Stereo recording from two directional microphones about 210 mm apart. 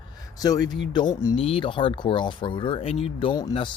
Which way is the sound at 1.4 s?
25° left (ahead or behind).